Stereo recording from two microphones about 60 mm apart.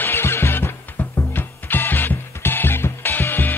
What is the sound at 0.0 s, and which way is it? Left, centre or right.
Music, left.